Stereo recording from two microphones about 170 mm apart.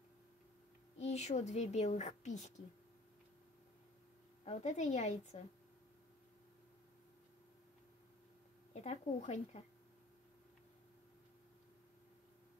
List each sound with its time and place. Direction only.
0.9 s speech: 40° left (ahead or behind)
4.5 s a woman's voice: 45° left (ahead or behind)
8.7 s a woman's voice: 45° left (ahead or behind)